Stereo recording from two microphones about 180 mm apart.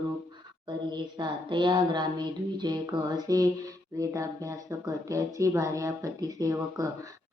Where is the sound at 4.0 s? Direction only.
20° right (ahead or behind).